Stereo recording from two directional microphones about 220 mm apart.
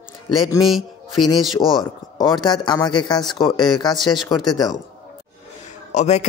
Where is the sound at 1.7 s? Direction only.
20° left (ahead or behind).